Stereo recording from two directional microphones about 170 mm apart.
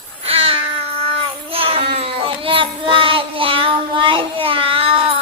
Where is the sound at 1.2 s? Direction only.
35° right (ahead or behind).